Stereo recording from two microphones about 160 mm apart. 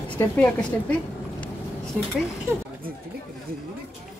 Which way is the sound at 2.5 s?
15° right (ahead or behind).